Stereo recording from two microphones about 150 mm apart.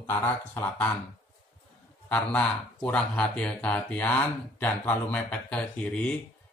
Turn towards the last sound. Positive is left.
turn(degrees=10)  # may be behind; listen again after turning